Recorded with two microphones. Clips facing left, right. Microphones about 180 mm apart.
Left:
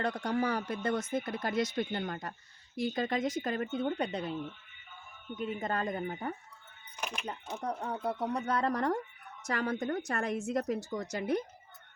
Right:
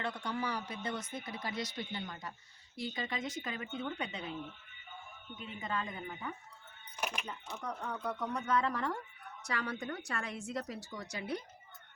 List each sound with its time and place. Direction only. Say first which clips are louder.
0.0 s a woman's voice: left 6 dB; 40° left (ahead or behind)
5.4 s a woman's voice: left 6 dB; 45° left (ahead or behind)
6.9 s speech: even; 5° right (ahead or behind)
7.3 s a woman's voice: left 5 dB; 35° left (ahead or behind)